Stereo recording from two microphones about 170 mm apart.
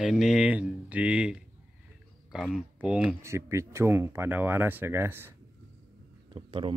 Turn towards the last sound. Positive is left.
turn(degrees=-30)  # may be behind; listen again after turning